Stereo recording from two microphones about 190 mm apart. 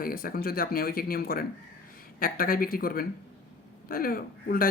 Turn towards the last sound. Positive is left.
turn(degrees=50)  # may be behind; listen again after turning